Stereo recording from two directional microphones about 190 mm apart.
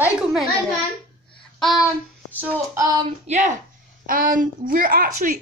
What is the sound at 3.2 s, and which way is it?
Speech, 40° right (ahead or behind).